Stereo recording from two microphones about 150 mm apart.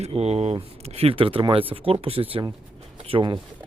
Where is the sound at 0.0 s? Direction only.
45° right (ahead or behind).